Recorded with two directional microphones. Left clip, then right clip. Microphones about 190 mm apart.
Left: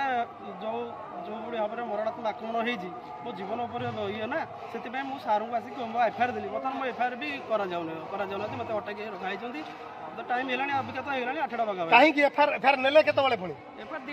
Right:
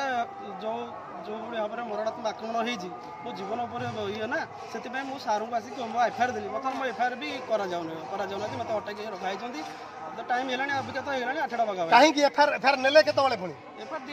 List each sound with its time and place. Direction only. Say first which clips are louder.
0.0 s a sound: even; centre (ahead or behind)
1.5 s a man's voice: left 1 dB; 5° right (ahead or behind)
11.9 s a man's voice: even; 20° right (ahead or behind)